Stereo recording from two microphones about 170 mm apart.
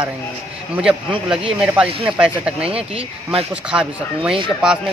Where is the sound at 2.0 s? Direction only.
5° right (ahead or behind).